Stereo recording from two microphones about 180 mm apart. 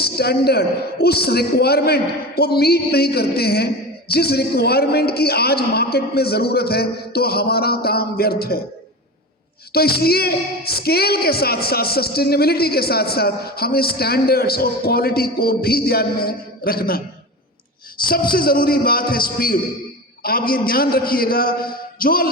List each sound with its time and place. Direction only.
0.0 s a woman's voice: 60° left (ahead or behind)
9.7 s a woman's voice: 60° left (ahead or behind)
18.1 s a woman's voice: 55° left (ahead or behind)